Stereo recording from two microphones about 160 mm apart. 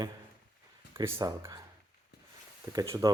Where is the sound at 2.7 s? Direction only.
20° right (ahead or behind).